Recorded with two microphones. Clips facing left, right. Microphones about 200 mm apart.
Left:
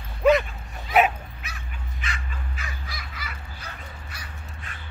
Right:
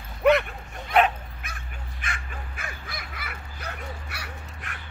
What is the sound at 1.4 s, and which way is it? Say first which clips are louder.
Goose: left 1 dB; 50° right (ahead or behind).